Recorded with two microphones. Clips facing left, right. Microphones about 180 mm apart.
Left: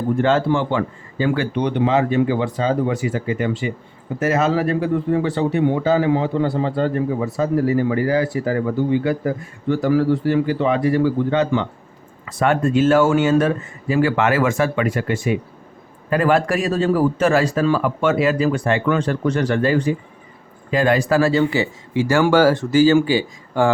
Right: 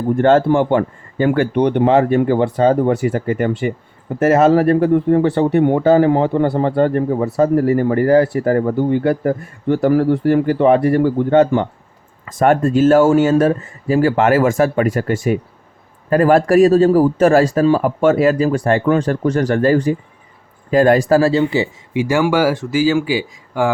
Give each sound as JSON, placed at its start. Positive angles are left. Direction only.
{"t": 0.2, "sound": "speech", "side_deg": -50}